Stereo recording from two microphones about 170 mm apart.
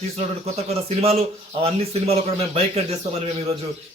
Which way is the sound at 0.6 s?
35° right (ahead or behind).